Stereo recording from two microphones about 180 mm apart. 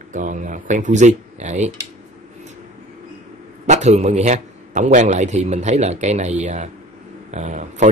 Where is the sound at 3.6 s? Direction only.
40° right (ahead or behind).